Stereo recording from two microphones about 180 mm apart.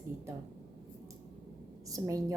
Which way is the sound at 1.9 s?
20° right (ahead or behind).